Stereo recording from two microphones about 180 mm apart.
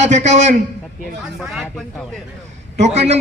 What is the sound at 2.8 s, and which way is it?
Speech, 35° right (ahead or behind).